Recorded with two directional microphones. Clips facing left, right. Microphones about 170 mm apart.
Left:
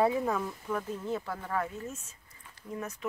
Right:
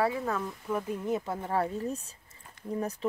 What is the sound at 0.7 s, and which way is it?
Speech, 10° right (ahead or behind).